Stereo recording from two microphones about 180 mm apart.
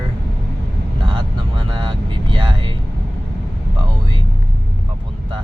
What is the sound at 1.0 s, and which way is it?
Vehicle, 25° right (ahead or behind).